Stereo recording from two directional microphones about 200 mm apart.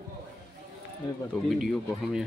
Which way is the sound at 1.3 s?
Centre (ahead or behind).